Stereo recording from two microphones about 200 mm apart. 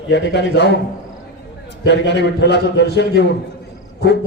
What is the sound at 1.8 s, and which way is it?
A man's voice, 60° left (ahead or behind).